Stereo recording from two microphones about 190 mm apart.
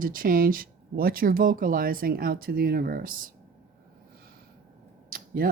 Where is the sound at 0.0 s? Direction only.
50° right (ahead or behind).